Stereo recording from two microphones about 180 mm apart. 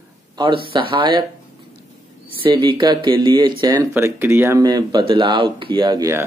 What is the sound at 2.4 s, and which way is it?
Speech, 25° right (ahead or behind).